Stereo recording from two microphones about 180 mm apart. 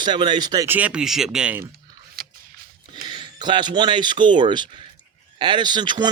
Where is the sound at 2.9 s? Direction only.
25° right (ahead or behind).